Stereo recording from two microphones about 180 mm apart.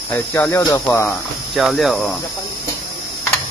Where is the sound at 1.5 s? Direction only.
Centre (ahead or behind).